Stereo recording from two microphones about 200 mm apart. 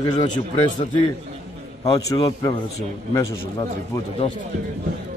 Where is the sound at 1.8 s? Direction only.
15° left (ahead or behind).